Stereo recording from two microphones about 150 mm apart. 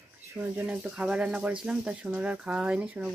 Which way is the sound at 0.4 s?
10° right (ahead or behind).